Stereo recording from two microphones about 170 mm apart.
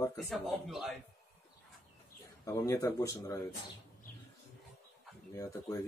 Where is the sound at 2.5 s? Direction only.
20° left (ahead or behind).